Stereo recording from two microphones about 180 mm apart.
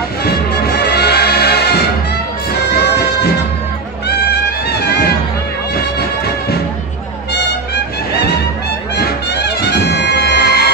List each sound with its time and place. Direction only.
0.8 s music: 60° left (ahead or behind)
8.9 s music: 65° left (ahead or behind)